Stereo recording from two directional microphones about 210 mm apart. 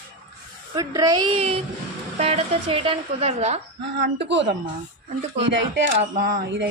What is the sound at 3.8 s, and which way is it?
Speech, 60° right (ahead or behind).